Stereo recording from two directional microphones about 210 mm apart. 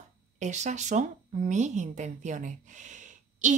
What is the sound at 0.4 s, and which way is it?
Speech, 35° right (ahead or behind).